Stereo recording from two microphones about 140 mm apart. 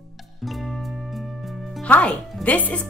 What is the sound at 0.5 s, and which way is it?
Music, centre (ahead or behind).